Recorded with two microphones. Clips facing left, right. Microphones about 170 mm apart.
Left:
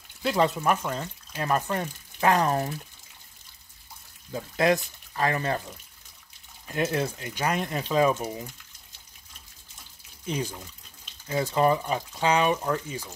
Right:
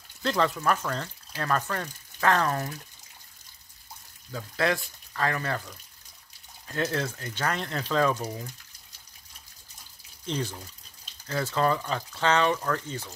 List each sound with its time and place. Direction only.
0.2 s speech: 10° left (ahead or behind)
4.3 s speech: 20° left (ahead or behind)
10.2 s speech: 10° left (ahead or behind)